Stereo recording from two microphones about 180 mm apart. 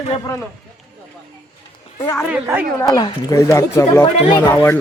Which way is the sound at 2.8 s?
20° left (ahead or behind).